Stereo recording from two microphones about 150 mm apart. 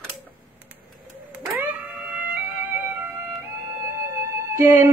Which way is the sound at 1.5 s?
10° right (ahead or behind).